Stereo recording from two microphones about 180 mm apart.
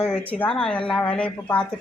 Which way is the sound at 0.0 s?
5° left (ahead or behind).